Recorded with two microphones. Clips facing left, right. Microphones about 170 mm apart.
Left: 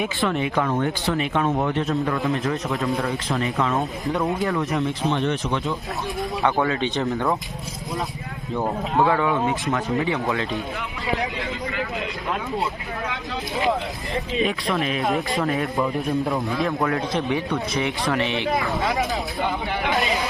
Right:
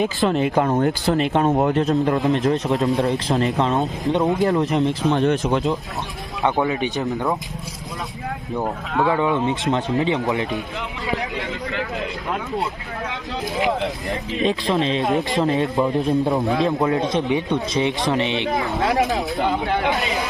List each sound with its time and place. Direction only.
0.2 s speech: 35° right (ahead or behind)
3.8 s speech: 20° right (ahead or behind)
4.4 s speech: 35° right (ahead or behind)
6.4 s speech: 15° right (ahead or behind)
9.0 s speech: 20° right (ahead or behind)
14.4 s speech: 25° right (ahead or behind)
15.0 s speech: centre (ahead or behind)
15.4 s speech: 25° right (ahead or behind)